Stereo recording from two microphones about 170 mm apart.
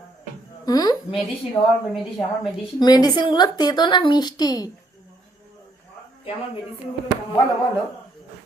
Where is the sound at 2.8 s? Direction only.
25° left (ahead or behind).